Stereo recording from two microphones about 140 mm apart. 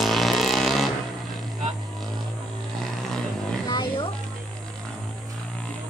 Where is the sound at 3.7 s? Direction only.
35° left (ahead or behind).